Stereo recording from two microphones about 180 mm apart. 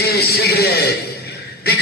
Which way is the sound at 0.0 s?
60° left (ahead or behind).